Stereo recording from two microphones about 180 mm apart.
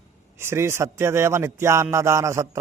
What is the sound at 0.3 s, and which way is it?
A man's voice, 15° right (ahead or behind).